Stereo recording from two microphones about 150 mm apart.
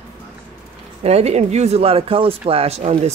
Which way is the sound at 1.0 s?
45° right (ahead or behind).